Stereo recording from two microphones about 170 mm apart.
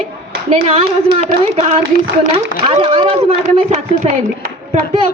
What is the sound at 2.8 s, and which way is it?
Speech, 35° right (ahead or behind).